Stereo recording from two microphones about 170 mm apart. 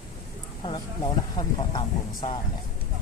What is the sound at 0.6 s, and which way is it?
Speech, 30° left (ahead or behind).